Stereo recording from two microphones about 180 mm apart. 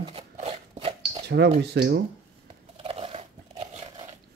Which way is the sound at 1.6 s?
70° right (ahead or behind).